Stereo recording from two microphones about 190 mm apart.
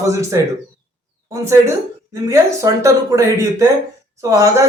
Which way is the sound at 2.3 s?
20° right (ahead or behind).